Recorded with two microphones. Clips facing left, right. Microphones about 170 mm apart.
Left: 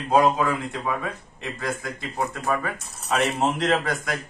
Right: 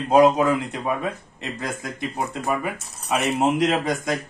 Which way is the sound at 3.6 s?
15° right (ahead or behind).